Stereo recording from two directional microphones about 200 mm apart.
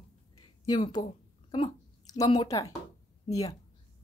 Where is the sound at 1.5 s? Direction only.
20° left (ahead or behind).